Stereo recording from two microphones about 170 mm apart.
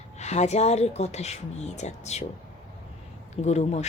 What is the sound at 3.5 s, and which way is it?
Speech, 40° left (ahead or behind).